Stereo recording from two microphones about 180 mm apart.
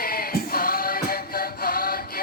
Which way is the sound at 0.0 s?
55° left (ahead or behind).